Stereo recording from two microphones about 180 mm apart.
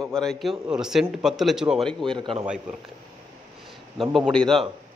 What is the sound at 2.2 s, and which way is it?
Speech, 25° right (ahead or behind).